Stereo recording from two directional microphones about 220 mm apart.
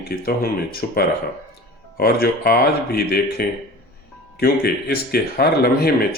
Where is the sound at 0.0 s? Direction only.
45° left (ahead or behind).